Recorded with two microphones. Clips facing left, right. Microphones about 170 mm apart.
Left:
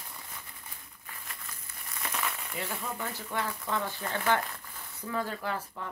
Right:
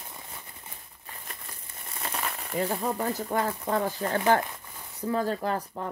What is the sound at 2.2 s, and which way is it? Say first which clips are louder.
Speech: right 10 dB; 40° right (ahead or behind).